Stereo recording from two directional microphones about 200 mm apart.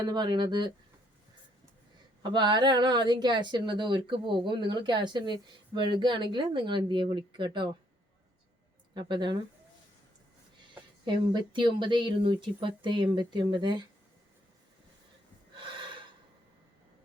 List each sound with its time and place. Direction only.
0.0 s a woman's voice: 20° right (ahead or behind)
2.3 s a woman's voice: 20° right (ahead or behind)
9.0 s a woman's voice: 25° right (ahead or behind)
11.0 s a woman's voice: 25° right (ahead or behind)
15.6 s gasp: 25° right (ahead or behind)